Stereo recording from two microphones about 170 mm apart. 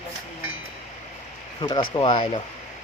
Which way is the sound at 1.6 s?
25° left (ahead or behind).